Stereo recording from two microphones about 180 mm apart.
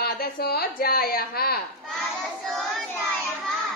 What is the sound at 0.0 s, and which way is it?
A woman's voice, 60° left (ahead or behind).